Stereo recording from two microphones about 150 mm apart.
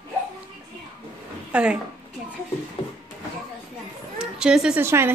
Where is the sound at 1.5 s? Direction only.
5° right (ahead or behind).